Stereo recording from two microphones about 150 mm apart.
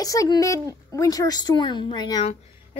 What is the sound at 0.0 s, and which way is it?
A woman's voice, 25° left (ahead or behind).